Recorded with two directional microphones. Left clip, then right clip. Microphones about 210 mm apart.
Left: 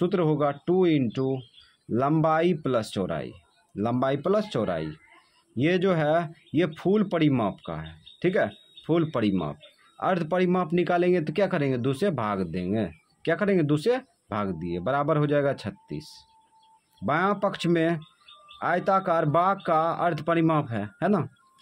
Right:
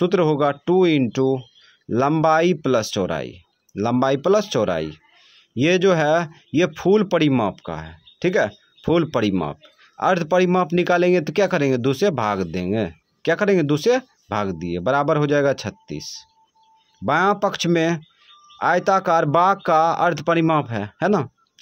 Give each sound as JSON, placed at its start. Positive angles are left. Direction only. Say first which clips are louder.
{"t": 0.0, "sound": "speech", "louder": "right 6 dB", "side_deg": -35}